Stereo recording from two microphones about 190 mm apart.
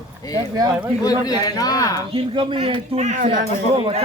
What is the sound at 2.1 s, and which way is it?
A man's voice, 30° right (ahead or behind).